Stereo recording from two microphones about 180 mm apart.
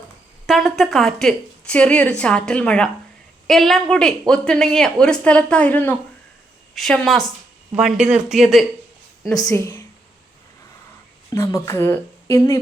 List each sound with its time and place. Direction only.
0.4 s speech: centre (ahead or behind)
9.4 s speech: 20° left (ahead or behind)
11.3 s speech: 15° left (ahead or behind)